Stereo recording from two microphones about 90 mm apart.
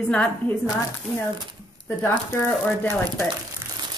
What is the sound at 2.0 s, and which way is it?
Speech, 20° left (ahead or behind).